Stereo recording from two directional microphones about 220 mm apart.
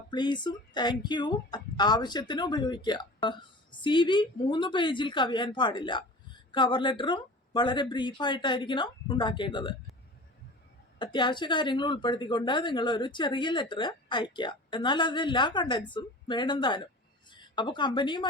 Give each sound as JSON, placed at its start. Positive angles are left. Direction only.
{"t": 0.1, "sound": "a woman's voice", "side_deg": 20}
{"t": 11.0, "sound": "a woman's voice", "side_deg": 20}